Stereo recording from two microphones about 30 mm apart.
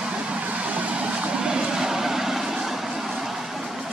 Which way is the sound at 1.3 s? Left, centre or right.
Right.